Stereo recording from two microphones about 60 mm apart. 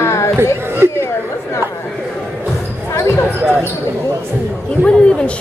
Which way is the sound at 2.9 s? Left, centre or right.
Left.